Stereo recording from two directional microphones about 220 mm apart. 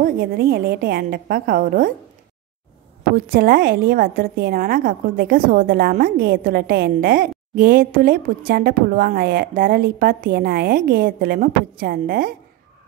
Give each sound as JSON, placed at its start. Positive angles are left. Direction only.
{"t": 0.0, "sound": "a woman's voice", "side_deg": -45}
{"t": 3.3, "sound": "a woman's voice", "side_deg": -40}